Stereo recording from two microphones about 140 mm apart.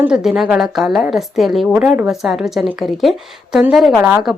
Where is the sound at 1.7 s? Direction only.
15° right (ahead or behind).